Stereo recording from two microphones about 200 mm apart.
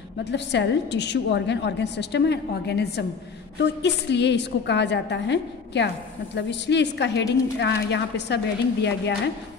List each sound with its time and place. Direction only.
0.2 s a woman's voice: 60° left (ahead or behind)